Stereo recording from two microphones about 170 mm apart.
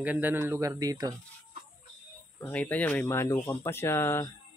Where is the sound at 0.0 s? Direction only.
10° right (ahead or behind).